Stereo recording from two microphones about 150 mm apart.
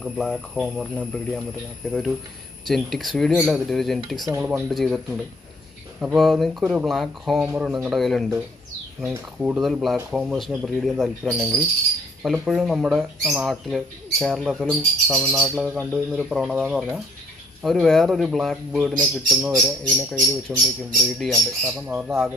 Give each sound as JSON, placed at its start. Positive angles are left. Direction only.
{"t": 0.0, "sound": "speech", "side_deg": 0}
{"t": 2.6, "sound": "speech", "side_deg": 0}
{"t": 4.3, "sound": "speech", "side_deg": -15}
{"t": 4.6, "sound": "speech", "side_deg": 0}
{"t": 21.8, "sound": "speech", "side_deg": -10}